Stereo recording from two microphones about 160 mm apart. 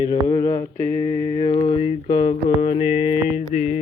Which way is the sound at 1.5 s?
40° left (ahead or behind).